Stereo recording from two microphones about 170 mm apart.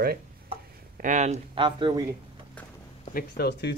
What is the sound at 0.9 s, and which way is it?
Speech, 50° right (ahead or behind).